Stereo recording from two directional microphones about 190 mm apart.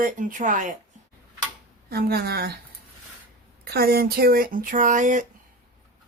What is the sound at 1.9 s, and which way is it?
Speech, 55° right (ahead or behind).